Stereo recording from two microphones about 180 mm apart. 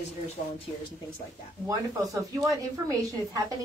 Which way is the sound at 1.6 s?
15° right (ahead or behind).